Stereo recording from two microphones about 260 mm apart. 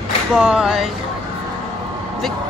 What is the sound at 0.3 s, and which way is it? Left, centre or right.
Speech, centre.